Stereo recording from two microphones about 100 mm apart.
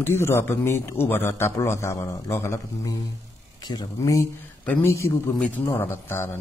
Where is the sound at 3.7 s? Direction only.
45° left (ahead or behind).